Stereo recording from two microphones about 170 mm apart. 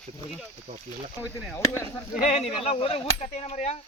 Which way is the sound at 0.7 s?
40° right (ahead or behind).